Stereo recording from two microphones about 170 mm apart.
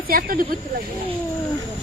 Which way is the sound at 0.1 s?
55° right (ahead or behind).